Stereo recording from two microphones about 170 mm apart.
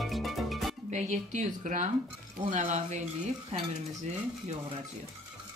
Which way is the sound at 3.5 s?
40° right (ahead or behind).